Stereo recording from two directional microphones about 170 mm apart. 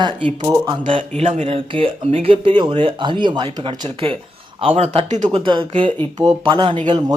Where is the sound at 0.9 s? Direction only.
35° right (ahead or behind).